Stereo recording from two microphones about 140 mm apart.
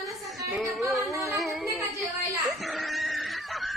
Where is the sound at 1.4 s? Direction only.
Centre (ahead or behind).